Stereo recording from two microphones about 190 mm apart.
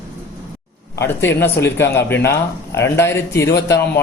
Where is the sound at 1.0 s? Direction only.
10° left (ahead or behind).